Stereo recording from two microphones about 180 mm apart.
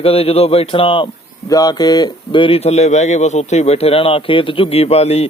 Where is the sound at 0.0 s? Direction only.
30° left (ahead or behind).